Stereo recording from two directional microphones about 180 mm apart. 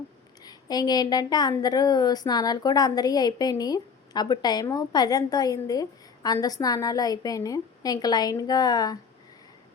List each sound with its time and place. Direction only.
0.4 s a woman's voice: 20° left (ahead or behind)